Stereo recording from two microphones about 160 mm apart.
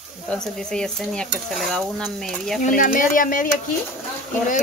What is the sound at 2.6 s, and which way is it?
Speech, 55° left (ahead or behind).